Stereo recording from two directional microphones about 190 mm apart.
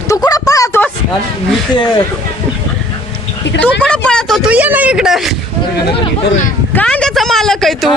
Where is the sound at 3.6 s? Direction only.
5° left (ahead or behind).